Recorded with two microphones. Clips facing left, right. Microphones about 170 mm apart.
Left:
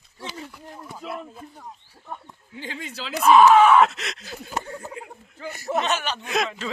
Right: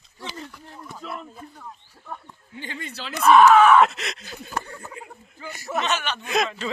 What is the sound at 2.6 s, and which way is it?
Speech, 90° left.